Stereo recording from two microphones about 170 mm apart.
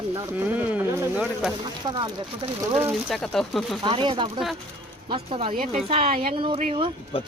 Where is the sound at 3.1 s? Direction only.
Centre (ahead or behind).